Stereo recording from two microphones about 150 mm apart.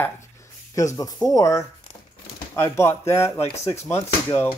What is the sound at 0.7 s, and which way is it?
Speech, 20° left (ahead or behind).